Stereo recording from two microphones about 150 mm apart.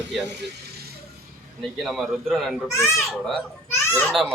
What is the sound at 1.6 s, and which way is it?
A man's voice, centre (ahead or behind).